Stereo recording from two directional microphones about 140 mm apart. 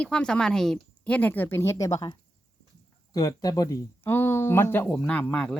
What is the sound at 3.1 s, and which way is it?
A woman's voice, 25° left (ahead or behind).